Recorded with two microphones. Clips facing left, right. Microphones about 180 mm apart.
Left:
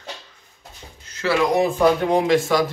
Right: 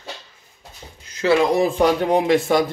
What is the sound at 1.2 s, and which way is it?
Speech, 20° right (ahead or behind).